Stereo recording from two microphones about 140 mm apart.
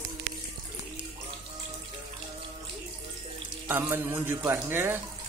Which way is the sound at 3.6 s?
15° right (ahead or behind).